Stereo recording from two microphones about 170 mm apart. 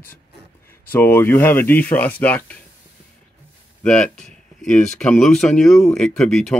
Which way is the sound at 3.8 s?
5° left (ahead or behind).